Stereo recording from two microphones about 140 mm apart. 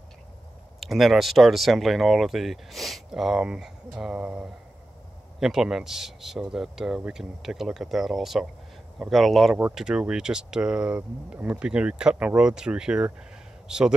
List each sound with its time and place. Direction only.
0.7 s a man's voice: centre (ahead or behind)